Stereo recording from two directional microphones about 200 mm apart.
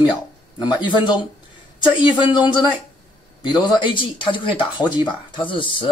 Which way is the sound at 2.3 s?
25° left (ahead or behind).